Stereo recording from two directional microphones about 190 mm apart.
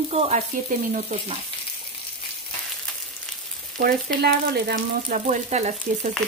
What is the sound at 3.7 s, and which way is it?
Frying, 55° right (ahead or behind).